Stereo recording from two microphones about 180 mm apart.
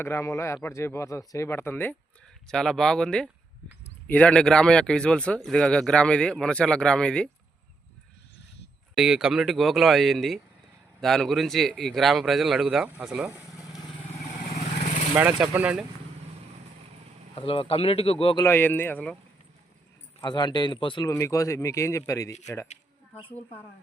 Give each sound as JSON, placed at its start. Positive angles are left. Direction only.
{"t": 0.0, "sound": "a man's voice", "side_deg": 15}
{"t": 9.0, "sound": "speech", "side_deg": -5}
{"t": 15.1, "sound": "speech", "side_deg": -10}
{"t": 17.3, "sound": "speech", "side_deg": 30}
{"t": 18.4, "sound": "a man's voice", "side_deg": 10}
{"t": 20.2, "sound": "a man's voice", "side_deg": 25}